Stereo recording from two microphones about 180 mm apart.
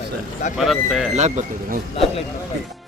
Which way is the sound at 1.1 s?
40° right (ahead or behind).